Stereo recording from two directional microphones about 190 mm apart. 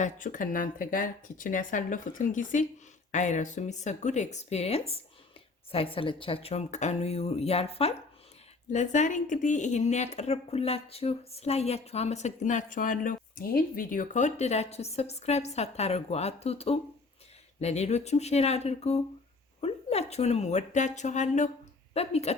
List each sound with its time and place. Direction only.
0.0 s speech: 45° left (ahead or behind)